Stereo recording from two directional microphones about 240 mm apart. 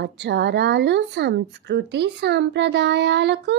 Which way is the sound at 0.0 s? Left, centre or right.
Right.